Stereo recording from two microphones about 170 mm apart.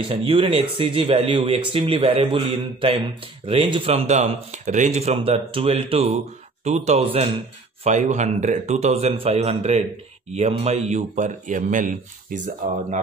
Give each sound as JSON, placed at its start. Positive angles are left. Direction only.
{"t": 0.1, "sound": "speech", "side_deg": -30}